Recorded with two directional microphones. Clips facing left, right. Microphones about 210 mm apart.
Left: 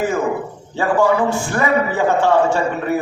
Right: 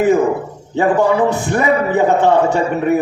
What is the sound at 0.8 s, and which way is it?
A man's voice, 20° right (ahead or behind).